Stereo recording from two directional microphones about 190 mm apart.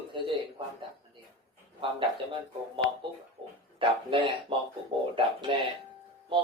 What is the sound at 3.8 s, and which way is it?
Speech, 25° right (ahead or behind).